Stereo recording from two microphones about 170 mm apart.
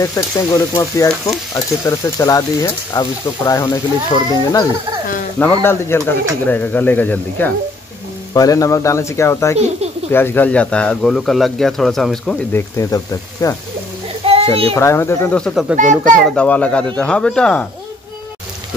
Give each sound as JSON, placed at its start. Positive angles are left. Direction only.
{"t": 0.7, "sound": "speech", "side_deg": 20}
{"t": 12.7, "sound": "speech", "side_deg": 20}
{"t": 14.2, "sound": "a sound", "side_deg": -35}
{"t": 14.7, "sound": "speech", "side_deg": 15}
{"t": 15.7, "sound": "speech", "side_deg": -45}
{"t": 16.0, "sound": "speech", "side_deg": 5}